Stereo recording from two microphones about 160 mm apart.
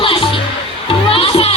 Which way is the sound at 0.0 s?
35° left (ahead or behind).